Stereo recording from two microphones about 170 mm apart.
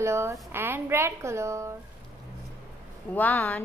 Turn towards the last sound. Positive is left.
turn(degrees=10)  # may be behind; listen again after turning